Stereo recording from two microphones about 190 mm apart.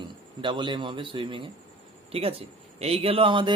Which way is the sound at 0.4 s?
25° right (ahead or behind).